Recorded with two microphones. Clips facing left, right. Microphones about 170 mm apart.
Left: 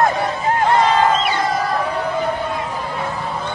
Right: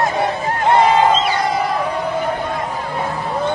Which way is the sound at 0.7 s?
25° right (ahead or behind).